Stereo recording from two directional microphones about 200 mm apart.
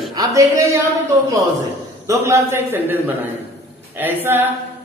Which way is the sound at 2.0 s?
15° right (ahead or behind).